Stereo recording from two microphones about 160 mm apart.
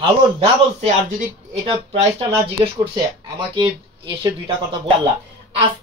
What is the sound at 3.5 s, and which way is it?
Speech, 30° right (ahead or behind).